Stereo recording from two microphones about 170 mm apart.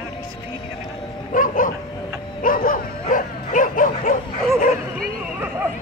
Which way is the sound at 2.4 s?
55° left (ahead or behind).